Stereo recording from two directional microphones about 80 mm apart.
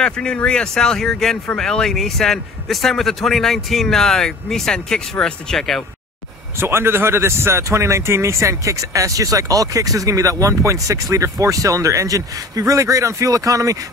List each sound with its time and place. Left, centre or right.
0.0 s a man's voice: centre
6.6 s speech: right